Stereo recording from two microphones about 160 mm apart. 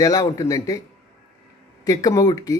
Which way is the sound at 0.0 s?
20° left (ahead or behind).